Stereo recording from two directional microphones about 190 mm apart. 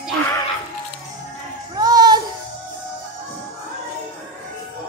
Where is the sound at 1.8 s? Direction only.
20° right (ahead or behind).